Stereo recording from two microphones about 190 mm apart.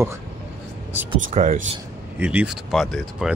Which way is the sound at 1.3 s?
40° right (ahead or behind).